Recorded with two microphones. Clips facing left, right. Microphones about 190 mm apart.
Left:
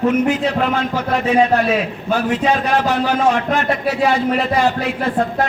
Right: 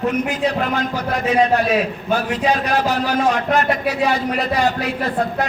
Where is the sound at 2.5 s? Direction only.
35° right (ahead or behind).